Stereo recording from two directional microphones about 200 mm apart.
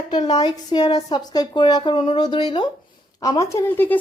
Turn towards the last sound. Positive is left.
turn(degrees=10)  # may be behind; listen again after turning